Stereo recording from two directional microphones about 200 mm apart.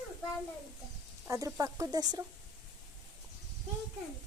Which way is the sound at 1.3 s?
15° right (ahead or behind).